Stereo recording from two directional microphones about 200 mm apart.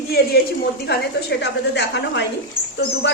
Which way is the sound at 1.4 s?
60° left (ahead or behind).